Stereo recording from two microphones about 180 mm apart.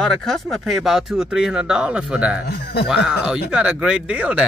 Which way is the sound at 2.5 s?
60° left (ahead or behind).